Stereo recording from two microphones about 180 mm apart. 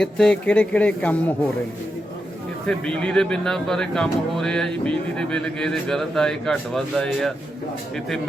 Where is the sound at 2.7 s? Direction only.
5° left (ahead or behind).